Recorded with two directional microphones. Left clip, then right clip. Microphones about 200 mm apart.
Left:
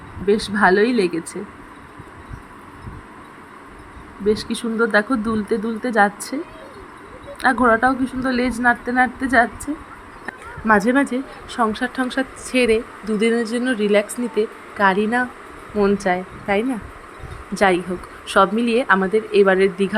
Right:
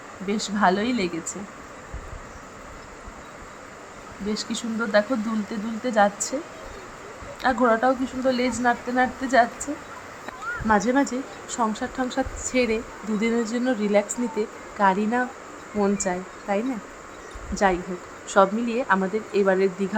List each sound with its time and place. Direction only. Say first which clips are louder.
0.3 s speech: left 6 dB; 15° left (ahead or behind)
4.3 s speech: left 9 dB; 15° left (ahead or behind)
7.4 s speech: left 4 dB; 15° left (ahead or behind)